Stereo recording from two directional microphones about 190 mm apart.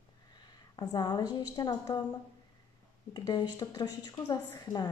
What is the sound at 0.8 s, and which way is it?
A woman's voice, 20° left (ahead or behind).